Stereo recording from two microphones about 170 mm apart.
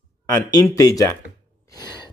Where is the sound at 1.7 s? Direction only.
25° left (ahead or behind).